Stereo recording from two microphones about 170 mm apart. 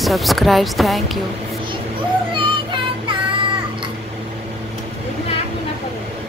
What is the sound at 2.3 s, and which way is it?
Music, 30° right (ahead or behind).